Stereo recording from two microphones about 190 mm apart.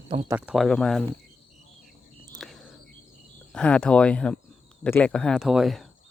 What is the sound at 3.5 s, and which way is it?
Speech, 5° left (ahead or behind).